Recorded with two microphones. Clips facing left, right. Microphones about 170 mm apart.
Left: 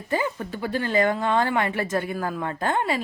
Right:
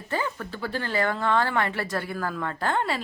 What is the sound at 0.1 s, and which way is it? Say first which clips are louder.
Speech: left 4 dB; 15° left (ahead or behind).